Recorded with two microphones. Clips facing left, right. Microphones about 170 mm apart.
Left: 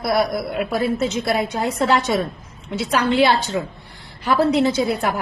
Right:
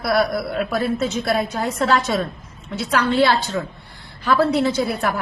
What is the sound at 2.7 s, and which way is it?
A woman's voice, 20° left (ahead or behind).